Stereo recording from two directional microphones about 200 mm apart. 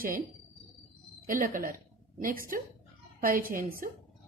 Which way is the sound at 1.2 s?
40° right (ahead or behind).